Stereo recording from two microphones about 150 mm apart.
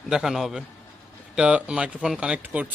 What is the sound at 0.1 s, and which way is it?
A man's voice, centre (ahead or behind).